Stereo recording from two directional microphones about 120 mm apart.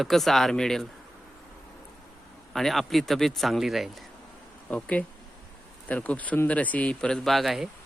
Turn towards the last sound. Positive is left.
turn(degrees=0)  # may be behind; listen again after turning